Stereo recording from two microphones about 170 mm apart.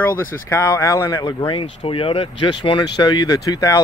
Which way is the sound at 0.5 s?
20° left (ahead or behind).